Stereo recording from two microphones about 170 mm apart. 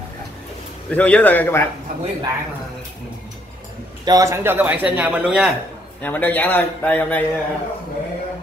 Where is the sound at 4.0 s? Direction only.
20° right (ahead or behind); by 5.5 s 5° right (ahead or behind).